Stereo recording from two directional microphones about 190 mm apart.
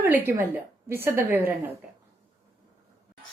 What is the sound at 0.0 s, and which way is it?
A woman's voice, 10° right (ahead or behind).